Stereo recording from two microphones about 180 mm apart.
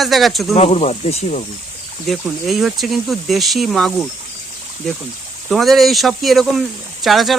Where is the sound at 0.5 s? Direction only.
35° left (ahead or behind).